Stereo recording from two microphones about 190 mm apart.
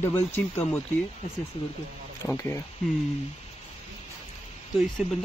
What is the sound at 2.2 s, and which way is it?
Mantra, 10° left (ahead or behind).